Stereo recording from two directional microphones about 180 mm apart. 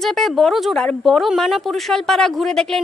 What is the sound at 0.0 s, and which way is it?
Speech, centre (ahead or behind).